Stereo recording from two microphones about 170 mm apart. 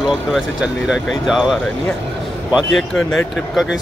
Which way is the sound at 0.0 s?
5° right (ahead or behind).